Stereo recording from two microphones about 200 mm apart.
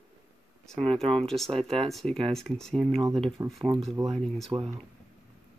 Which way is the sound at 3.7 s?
Centre (ahead or behind).